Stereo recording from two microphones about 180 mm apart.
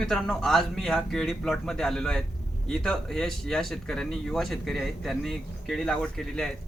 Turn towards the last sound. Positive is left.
turn(degrees=5)  # may be behind; listen again after turning